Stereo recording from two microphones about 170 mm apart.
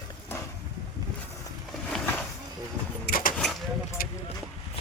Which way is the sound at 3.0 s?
55° left (ahead or behind).